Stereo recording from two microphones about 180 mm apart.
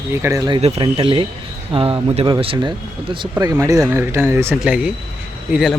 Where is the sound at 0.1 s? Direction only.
15° right (ahead or behind).